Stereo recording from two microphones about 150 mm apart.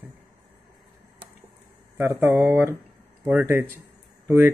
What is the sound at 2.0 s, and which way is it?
Speech, 15° right (ahead or behind).